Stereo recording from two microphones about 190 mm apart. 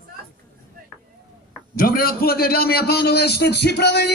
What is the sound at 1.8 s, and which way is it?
A man's voice, 50° left (ahead or behind).